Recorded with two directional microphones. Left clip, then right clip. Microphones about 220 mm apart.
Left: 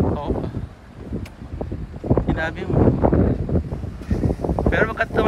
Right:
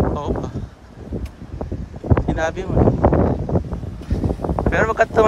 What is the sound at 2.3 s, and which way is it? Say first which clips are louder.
Wind noise: right 3 dB; 25° right (ahead or behind).